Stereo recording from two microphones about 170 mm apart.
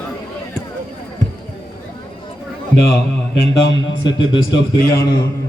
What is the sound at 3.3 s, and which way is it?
Mantra, 90° left.